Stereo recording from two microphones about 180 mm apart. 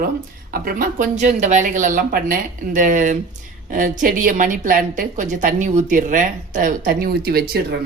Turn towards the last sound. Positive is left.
turn(degrees=-60)  # may be behind; listen again after turning